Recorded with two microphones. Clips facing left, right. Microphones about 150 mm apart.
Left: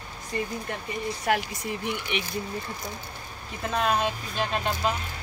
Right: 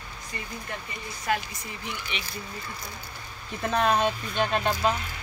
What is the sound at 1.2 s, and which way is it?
Speech, 65° left (ahead or behind).